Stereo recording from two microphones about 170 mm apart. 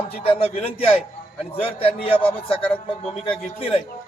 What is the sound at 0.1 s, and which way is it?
A man's voice, 35° left (ahead or behind).